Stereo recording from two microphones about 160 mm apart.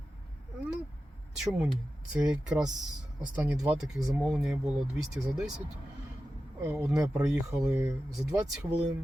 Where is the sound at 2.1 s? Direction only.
5° right (ahead or behind).